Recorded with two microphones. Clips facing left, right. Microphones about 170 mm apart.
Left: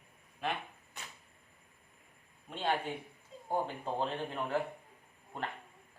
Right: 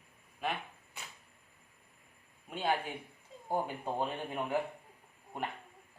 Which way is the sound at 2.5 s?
10° right (ahead or behind).